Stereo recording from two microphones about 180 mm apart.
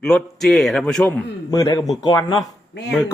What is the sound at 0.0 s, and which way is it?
Speech, centre (ahead or behind).